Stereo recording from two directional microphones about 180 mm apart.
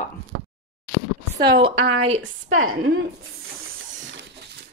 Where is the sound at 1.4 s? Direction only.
25° right (ahead or behind).